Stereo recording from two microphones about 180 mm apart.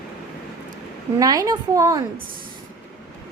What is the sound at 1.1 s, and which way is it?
Speech, 20° right (ahead or behind).